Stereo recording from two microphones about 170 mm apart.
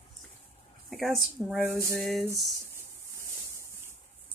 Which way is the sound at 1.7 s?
15° right (ahead or behind).